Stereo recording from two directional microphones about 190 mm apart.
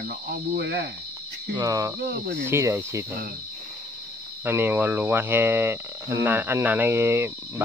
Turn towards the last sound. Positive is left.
turn(degrees=-15)  # may be behind; listen again after turning